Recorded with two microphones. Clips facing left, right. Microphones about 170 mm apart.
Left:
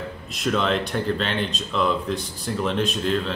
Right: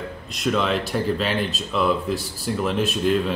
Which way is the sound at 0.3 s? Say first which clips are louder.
Right 1 dB; centre (ahead or behind).